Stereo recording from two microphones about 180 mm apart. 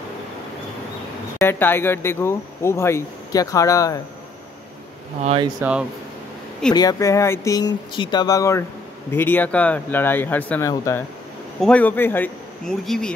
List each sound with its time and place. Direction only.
1.4 s speech: 10° left (ahead or behind)
5.6 s speech: 5° right (ahead or behind)
6.7 s speech: 20° left (ahead or behind); by 13.1 s 5° left (ahead or behind)